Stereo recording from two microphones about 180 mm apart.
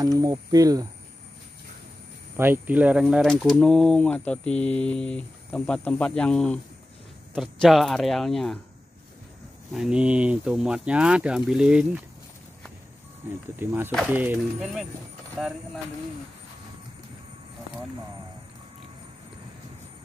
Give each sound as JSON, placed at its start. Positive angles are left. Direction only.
{"t": 0.0, "sound": "speech", "side_deg": -20}
{"t": 2.3, "sound": "speech", "side_deg": -10}
{"t": 9.7, "sound": "speech", "side_deg": -5}
{"t": 13.6, "sound": "speech", "side_deg": -10}